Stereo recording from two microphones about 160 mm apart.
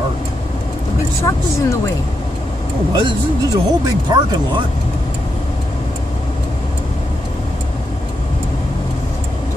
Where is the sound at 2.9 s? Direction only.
30° right (ahead or behind).